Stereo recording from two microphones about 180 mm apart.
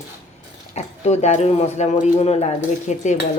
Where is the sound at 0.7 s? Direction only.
40° left (ahead or behind).